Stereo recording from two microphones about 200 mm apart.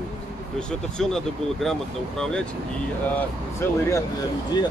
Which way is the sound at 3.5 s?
15° left (ahead or behind).